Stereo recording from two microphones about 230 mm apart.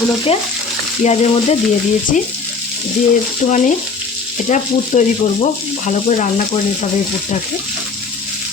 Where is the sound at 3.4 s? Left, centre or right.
Left.